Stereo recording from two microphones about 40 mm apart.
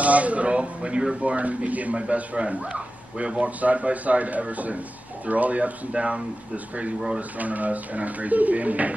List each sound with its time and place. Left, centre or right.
0.0 s a man's voice: right